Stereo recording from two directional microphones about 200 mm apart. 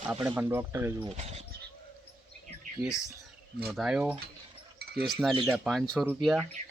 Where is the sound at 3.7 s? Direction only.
Centre (ahead or behind).